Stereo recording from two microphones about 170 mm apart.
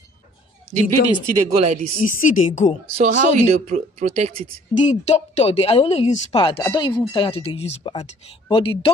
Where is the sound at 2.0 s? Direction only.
45° left (ahead or behind).